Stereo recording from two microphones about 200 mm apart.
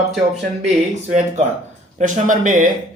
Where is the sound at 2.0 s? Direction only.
40° right (ahead or behind).